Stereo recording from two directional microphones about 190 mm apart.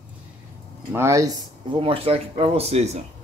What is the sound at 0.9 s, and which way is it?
Speech, 15° right (ahead or behind).